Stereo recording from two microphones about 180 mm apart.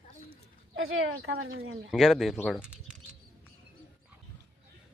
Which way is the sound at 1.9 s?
Centre (ahead or behind).